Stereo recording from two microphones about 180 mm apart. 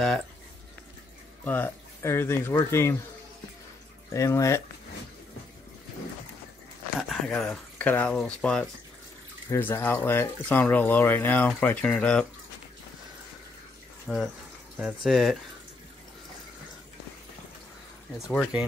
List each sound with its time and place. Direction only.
1.4 s speech: 10° left (ahead or behind)
4.1 s speech: 15° left (ahead or behind)
7.0 s speech: centre (ahead or behind)
14.0 s speech: centre (ahead or behind)
18.3 s speech: 5° left (ahead or behind)